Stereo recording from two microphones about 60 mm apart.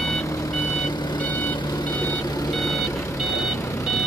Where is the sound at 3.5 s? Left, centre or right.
Left.